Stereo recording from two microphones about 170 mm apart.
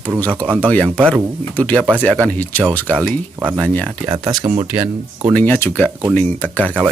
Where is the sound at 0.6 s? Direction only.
10° left (ahead or behind).